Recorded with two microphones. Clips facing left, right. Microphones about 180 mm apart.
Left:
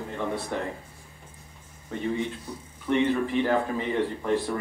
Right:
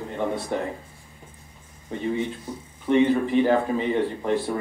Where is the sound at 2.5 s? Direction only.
20° right (ahead or behind).